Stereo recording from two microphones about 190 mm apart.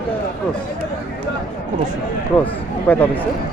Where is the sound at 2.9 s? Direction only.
10° left (ahead or behind).